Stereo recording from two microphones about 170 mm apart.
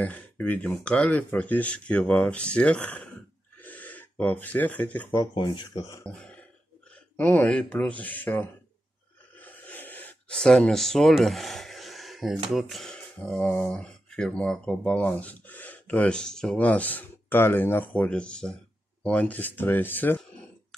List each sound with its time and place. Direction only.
0.0 s speech: 10° left (ahead or behind)
5.3 s speech: 25° left (ahead or behind)
6.0 s speech: 5° left (ahead or behind)
9.4 s gasp: 10° left (ahead or behind)
12.5 s speech: centre (ahead or behind)